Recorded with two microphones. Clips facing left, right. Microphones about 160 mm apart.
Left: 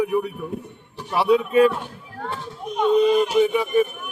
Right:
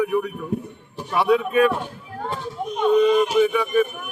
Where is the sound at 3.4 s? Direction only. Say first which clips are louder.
Even; 25° left (ahead or behind).